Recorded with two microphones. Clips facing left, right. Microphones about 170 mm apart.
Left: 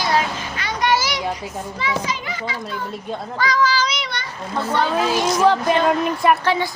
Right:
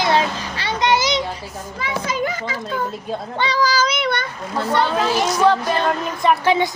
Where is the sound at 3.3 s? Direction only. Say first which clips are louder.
Even; 30° right (ahead or behind); by 4.3 s 55° right (ahead or behind).